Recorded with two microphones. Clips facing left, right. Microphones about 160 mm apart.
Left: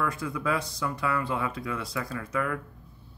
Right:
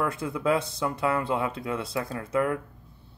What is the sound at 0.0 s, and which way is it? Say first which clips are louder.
Speech: right 3 dB; 25° right (ahead or behind).